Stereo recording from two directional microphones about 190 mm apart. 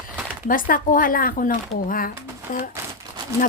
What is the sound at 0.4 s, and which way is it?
Speech, 45° left (ahead or behind).